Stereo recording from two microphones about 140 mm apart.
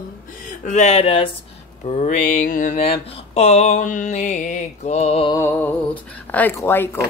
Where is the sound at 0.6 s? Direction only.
55° left (ahead or behind).